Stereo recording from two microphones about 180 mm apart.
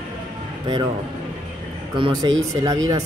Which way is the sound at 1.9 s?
25° right (ahead or behind).